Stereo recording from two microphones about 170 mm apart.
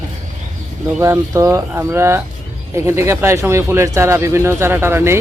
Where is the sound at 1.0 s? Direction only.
15° right (ahead or behind).